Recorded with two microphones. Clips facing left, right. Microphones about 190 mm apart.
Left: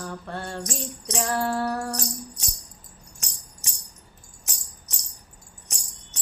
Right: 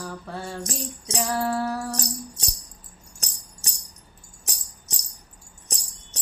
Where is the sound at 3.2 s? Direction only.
35° right (ahead or behind).